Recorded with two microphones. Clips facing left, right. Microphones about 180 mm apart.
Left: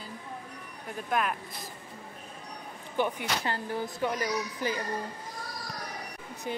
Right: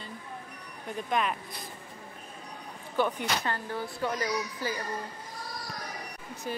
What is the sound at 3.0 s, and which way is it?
Speech, 15° left (ahead or behind).